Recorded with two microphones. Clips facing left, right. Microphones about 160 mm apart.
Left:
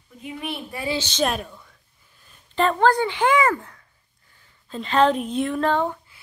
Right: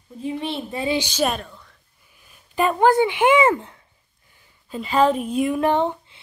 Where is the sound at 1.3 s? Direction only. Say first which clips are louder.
Left 1 dB; 5° left (ahead or behind).